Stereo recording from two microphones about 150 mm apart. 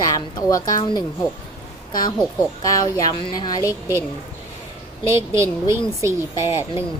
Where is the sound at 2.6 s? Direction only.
25° left (ahead or behind).